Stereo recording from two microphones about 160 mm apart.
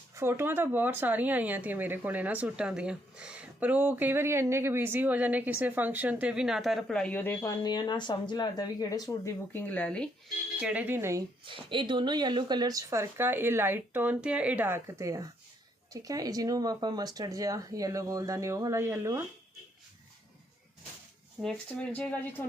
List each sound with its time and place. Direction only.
0.2 s speech: 15° right (ahead or behind); by 10.1 s 5° left (ahead or behind)
10.6 s speech: 10° right (ahead or behind)
11.4 s speech: 30° right (ahead or behind)
21.4 s speech: 10° left (ahead or behind)